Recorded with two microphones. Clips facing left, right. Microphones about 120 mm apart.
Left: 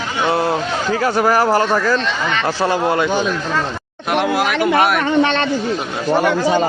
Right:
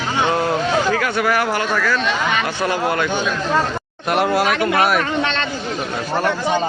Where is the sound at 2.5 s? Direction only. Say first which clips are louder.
Left 3 dB; 30° left (ahead or behind).